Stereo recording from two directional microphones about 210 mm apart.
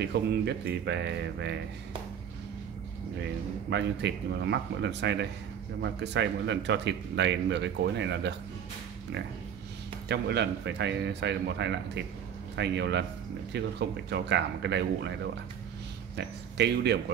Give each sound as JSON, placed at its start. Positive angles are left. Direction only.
{"t": 0.0, "sound": "speech", "side_deg": -50}
{"t": 3.7, "sound": "speech", "side_deg": -55}
{"t": 10.0, "sound": "speech", "side_deg": -55}
{"t": 16.2, "sound": "speech", "side_deg": -55}